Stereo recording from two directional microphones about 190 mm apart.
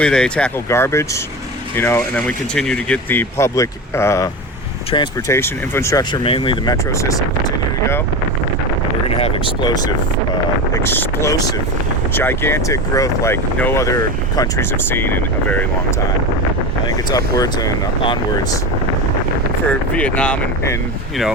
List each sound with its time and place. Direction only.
0.0 s speech: 5° left (ahead or behind)
4.9 s speech: 25° left (ahead or behind)
5.3 s speech: 15° left (ahead or behind)
9.0 s speech: 30° left (ahead or behind); by 15.6 s 10° left (ahead or behind)
16.8 s speech: 20° left (ahead or behind)
20.0 s speech: 5° left (ahead or behind)